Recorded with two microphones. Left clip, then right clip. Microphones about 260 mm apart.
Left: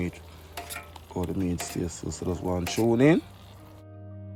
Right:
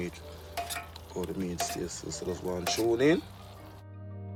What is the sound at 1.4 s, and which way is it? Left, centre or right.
Speech, centre.